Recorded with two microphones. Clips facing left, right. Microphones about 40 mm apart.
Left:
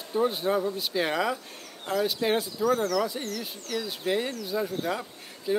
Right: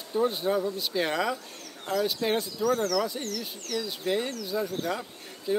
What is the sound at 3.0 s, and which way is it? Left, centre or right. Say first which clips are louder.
Speech: left 1 dB; centre.